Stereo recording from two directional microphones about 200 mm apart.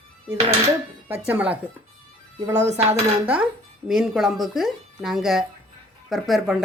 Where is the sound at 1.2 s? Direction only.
5° right (ahead or behind).